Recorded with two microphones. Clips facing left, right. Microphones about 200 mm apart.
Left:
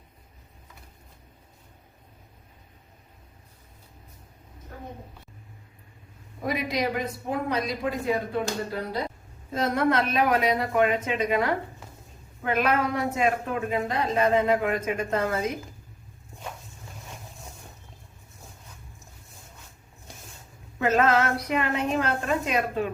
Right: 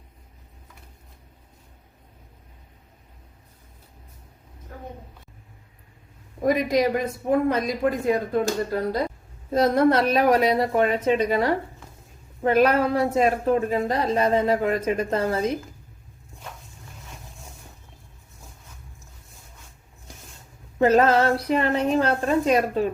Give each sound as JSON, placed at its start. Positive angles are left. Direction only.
{"t": 6.4, "sound": "a woman's voice", "side_deg": -45}
{"t": 20.7, "sound": "a woman's voice", "side_deg": -35}